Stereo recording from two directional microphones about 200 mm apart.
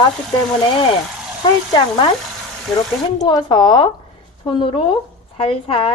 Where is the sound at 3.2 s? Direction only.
20° left (ahead or behind).